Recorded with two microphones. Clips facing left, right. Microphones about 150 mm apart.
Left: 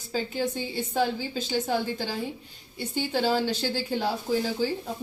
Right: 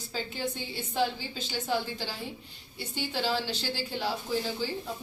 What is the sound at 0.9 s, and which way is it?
Speech, 45° left (ahead or behind).